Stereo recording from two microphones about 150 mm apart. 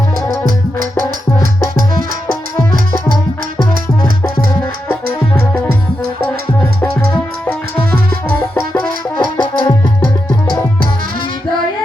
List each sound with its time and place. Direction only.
8.7 s music: 30° left (ahead or behind)